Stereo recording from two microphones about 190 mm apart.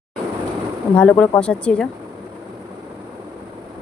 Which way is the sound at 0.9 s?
5° left (ahead or behind).